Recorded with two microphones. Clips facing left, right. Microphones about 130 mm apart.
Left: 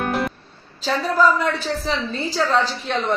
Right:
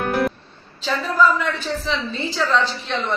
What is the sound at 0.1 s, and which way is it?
Music, centre (ahead or behind).